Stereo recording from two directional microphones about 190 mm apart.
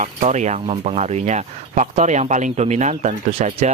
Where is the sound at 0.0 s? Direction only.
35° right (ahead or behind).